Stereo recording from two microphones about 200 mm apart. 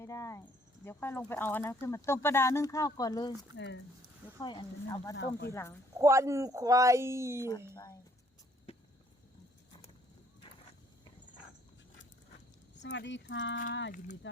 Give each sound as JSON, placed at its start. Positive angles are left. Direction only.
{"t": 0.0, "sound": "cricket", "side_deg": 15}
{"t": 0.9, "sound": "speech", "side_deg": 10}
{"t": 3.5, "sound": "speech", "side_deg": 60}
{"t": 4.4, "sound": "speech", "side_deg": 20}
{"t": 5.1, "sound": "speech", "side_deg": 60}
{"t": 5.5, "sound": "speech", "side_deg": 15}
{"t": 6.0, "sound": "speech", "side_deg": -15}
{"t": 12.8, "sound": "speech", "side_deg": 60}